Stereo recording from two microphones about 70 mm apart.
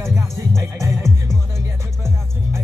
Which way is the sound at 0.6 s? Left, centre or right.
Right.